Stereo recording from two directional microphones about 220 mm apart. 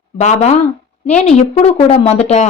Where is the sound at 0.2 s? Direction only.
30° left (ahead or behind).